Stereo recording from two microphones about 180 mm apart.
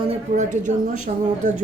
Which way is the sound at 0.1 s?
40° right (ahead or behind).